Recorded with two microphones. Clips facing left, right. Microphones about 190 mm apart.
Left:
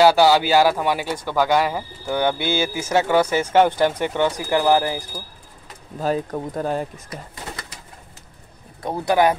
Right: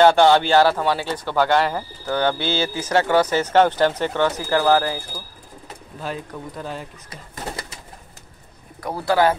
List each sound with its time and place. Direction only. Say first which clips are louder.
0.0 s speech: right 1 dB; 5° left (ahead or behind)
5.9 s speech: left 8 dB; 40° left (ahead or behind)
8.8 s speech: left 1 dB; 20° left (ahead or behind)